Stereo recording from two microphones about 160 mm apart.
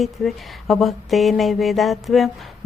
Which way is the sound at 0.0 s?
Centre (ahead or behind).